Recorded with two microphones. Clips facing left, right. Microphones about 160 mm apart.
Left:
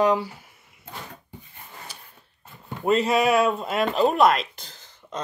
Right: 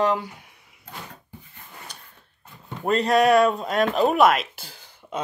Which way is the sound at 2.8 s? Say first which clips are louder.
Right 1 dB; centre (ahead or behind).